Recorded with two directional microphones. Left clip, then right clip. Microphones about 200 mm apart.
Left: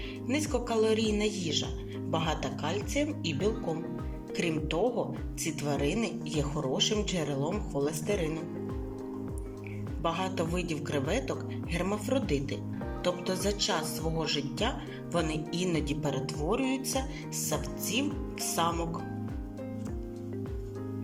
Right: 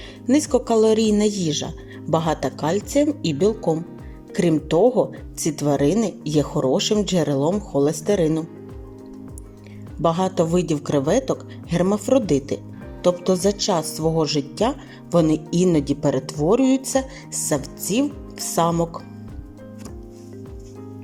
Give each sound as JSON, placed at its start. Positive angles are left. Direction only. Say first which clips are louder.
{"t": 0.3, "sound": "speech", "louder": "right 13 dB", "side_deg": -35}
{"t": 10.0, "sound": "speech", "louder": "right 12 dB", "side_deg": -35}